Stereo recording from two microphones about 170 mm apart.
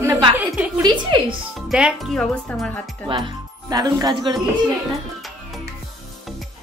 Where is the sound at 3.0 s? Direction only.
30° right (ahead or behind).